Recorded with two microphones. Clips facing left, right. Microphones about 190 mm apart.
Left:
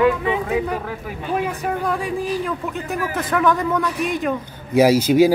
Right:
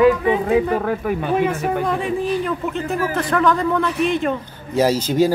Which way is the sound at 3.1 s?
5° left (ahead or behind).